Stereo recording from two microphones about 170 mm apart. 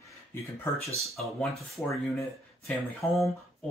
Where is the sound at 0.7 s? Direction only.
15° left (ahead or behind).